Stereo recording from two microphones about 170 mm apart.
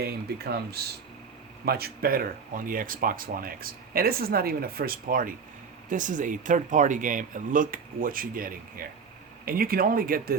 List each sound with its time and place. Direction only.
0.0 s speech: 70° right (ahead or behind)